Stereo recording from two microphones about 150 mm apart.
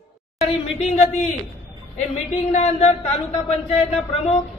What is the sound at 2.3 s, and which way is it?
Speech, 45° left (ahead or behind).